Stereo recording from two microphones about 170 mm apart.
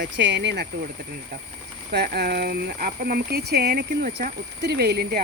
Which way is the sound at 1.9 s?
70° right (ahead or behind).